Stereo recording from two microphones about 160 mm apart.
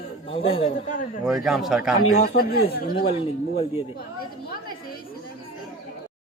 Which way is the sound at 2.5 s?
75° left (ahead or behind).